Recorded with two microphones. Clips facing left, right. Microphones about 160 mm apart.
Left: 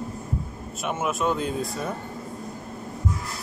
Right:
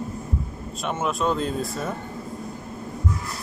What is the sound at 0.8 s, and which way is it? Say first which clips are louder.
Speech: right 1 dB; 5° left (ahead or behind).